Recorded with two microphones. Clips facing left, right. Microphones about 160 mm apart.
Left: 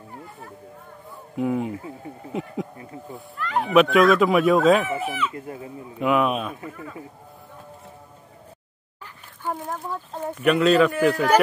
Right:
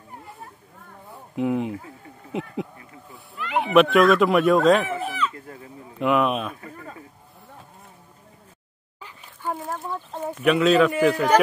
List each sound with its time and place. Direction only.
1.3 s speech: centre (ahead or behind)
2.8 s speech: 35° left (ahead or behind)
3.5 s speech: centre (ahead or behind)
5.3 s speech: 20° left (ahead or behind)
5.9 s speech: centre (ahead or behind)
9.4 s speech: centre (ahead or behind)